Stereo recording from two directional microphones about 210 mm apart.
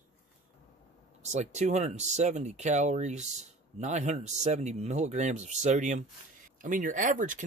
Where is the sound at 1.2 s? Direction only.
35° right (ahead or behind).